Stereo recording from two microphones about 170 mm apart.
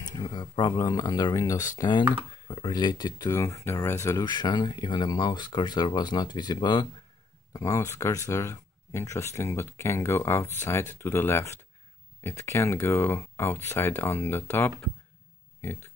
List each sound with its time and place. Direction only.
0.0 s speech: 25° left (ahead or behind)